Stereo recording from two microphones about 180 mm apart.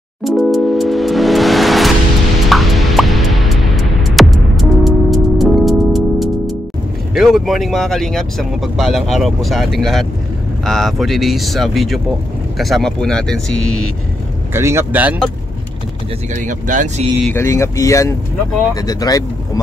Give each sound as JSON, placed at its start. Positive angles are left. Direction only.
{"t": 0.2, "sound": "music", "side_deg": 0}
{"t": 7.2, "sound": "speech", "side_deg": 0}
{"t": 14.5, "sound": "speech", "side_deg": -15}
{"t": 16.3, "sound": "speech", "side_deg": -45}
{"t": 17.3, "sound": "speech", "side_deg": 15}